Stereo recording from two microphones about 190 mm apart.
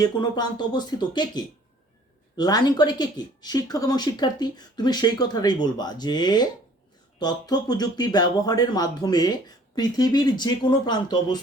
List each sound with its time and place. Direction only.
0.0 s speech: 20° left (ahead or behind)